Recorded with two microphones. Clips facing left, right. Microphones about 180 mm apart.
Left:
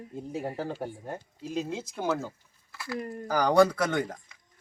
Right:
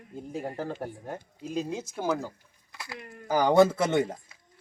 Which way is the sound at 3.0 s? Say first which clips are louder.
Left 10 dB; 35° left (ahead or behind).